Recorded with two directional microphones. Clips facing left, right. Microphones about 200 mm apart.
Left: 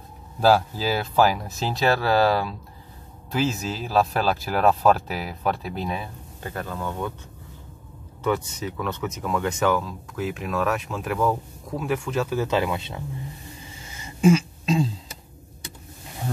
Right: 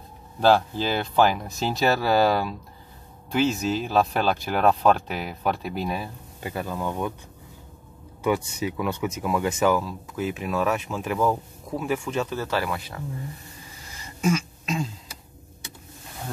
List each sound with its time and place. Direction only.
0.4 s speech: 5° left (ahead or behind); by 7.2 s 15° right (ahead or behind)
8.2 s speech: 10° right (ahead or behind)
12.4 s speech: 20° left (ahead or behind)
13.9 s throat clearing: 30° left (ahead or behind)